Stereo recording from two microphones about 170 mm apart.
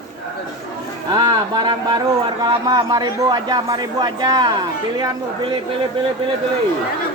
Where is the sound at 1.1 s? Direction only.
25° right (ahead or behind).